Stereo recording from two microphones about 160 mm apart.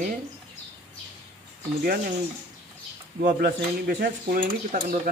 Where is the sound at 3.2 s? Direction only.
65° right (ahead or behind).